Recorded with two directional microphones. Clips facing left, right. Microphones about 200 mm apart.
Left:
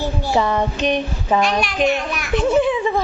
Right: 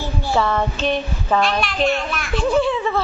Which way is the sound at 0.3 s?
15° left (ahead or behind).